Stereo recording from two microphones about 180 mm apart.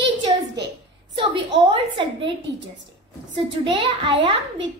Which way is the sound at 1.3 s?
25° right (ahead or behind).